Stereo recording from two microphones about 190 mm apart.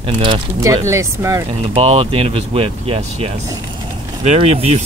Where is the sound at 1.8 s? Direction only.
30° right (ahead or behind).